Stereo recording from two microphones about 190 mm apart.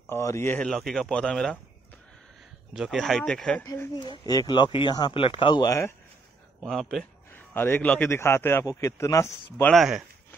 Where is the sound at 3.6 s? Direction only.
20° left (ahead or behind).